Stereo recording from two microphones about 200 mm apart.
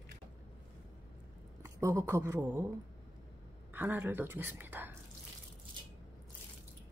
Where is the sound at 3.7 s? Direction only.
10° right (ahead or behind).